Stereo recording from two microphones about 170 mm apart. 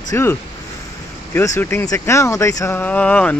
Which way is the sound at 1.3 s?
15° left (ahead or behind).